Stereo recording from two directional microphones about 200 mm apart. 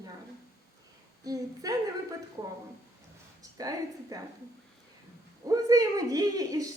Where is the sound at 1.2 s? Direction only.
20° right (ahead or behind).